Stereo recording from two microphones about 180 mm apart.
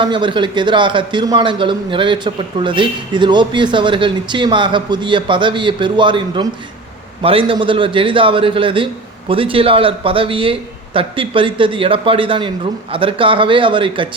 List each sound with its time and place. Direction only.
0.0 s a man's voice: 25° right (ahead or behind)